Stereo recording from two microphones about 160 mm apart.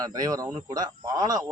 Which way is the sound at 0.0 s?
20° right (ahead or behind).